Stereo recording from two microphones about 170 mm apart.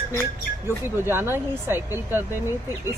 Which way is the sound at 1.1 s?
15° right (ahead or behind).